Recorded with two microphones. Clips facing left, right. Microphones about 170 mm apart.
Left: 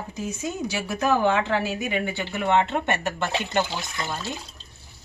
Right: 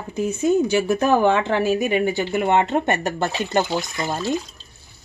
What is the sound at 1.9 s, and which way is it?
Speech, 40° right (ahead or behind).